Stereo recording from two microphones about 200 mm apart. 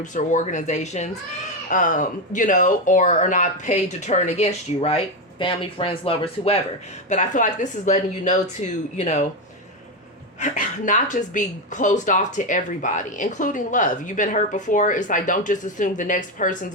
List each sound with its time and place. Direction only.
0.0 s speech: 40° left (ahead or behind)
10.4 s speech: 40° left (ahead or behind)